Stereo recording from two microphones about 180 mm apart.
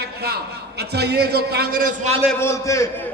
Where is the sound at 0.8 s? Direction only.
65° right (ahead or behind).